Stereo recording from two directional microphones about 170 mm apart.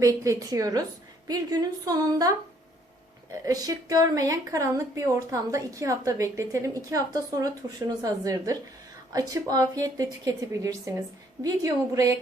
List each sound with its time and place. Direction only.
0.0 s speech: 20° right (ahead or behind)
3.4 s speech: 20° right (ahead or behind)